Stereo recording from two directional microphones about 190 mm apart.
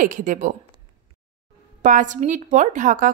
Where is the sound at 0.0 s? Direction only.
45° right (ahead or behind).